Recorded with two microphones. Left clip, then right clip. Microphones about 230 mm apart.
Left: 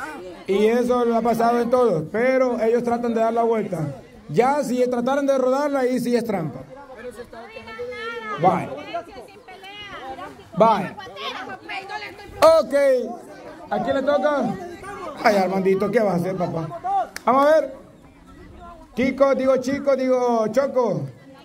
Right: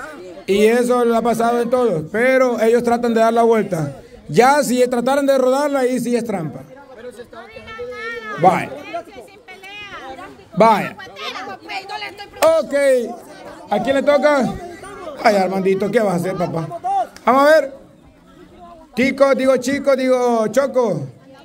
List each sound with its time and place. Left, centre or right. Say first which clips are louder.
0.5 s a man's voice: right 5 dB; right
7.7 s chatter: right 3 dB; right
9.8 s a sound: right 1 dB; right
11.0 s chatter: right 2 dB; right
12.4 s a man's voice: even; centre
12.8 s a man's voice: right 3 dB; right
13.7 s a man's voice: right 5 dB; right
15.1 s a man's voice: right 3 dB; centre
18.9 s a man's voice: right 4 dB; right